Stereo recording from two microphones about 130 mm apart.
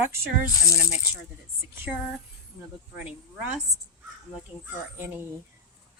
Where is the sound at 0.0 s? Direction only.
20° right (ahead or behind).